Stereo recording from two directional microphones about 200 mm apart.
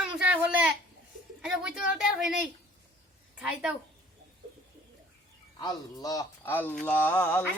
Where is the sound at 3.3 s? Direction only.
5° right (ahead or behind).